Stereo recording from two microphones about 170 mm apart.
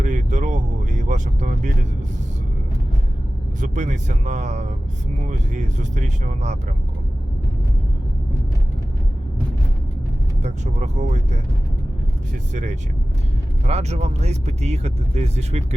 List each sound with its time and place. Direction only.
0.0 s vehicle: 45° right (ahead or behind)
3.6 s speech: 45° right (ahead or behind)
10.4 s speech: 40° right (ahead or behind)
13.7 s speech: 40° right (ahead or behind)